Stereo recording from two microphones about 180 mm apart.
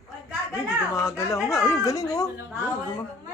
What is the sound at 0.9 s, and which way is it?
Speech, 15° left (ahead or behind).